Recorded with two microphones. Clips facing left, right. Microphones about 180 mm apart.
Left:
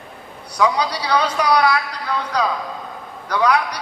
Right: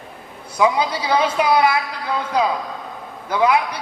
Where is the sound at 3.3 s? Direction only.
20° right (ahead or behind).